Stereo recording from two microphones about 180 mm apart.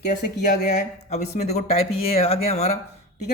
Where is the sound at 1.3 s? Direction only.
40° left (ahead or behind).